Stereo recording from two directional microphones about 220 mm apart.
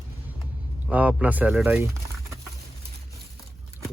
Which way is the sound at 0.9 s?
5° right (ahead or behind).